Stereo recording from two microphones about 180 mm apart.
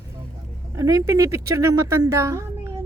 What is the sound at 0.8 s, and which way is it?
A woman's voice, 20° right (ahead or behind).